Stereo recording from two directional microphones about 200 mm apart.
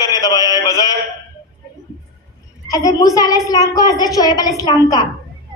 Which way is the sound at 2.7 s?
20° left (ahead or behind).